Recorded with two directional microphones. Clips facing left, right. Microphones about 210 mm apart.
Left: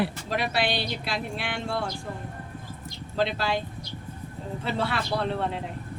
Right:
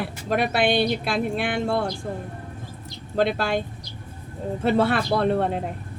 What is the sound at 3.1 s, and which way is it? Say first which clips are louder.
Speech: right 4 dB; 55° right (ahead or behind).